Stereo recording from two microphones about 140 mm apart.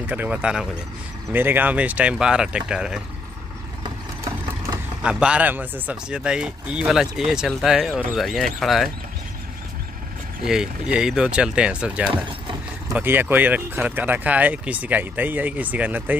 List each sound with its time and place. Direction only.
0.0 s speech: 10° right (ahead or behind)
3.8 s vehicle: 25° right (ahead or behind)
5.0 s speech: 5° right (ahead or behind)
10.4 s speech: 5° right (ahead or behind)